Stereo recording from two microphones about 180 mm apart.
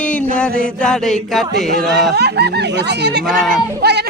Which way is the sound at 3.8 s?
65° right (ahead or behind).